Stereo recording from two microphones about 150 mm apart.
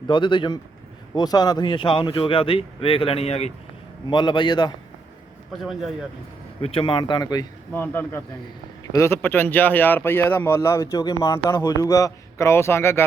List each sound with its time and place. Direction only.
0.1 s speech: 30° left (ahead or behind)
4.1 s speech: 30° left (ahead or behind)
6.6 s speech: 40° left (ahead or behind)
7.7 s speech: 15° left (ahead or behind)